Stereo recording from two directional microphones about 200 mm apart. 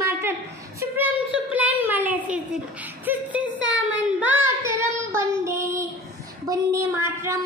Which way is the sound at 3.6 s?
65° right (ahead or behind).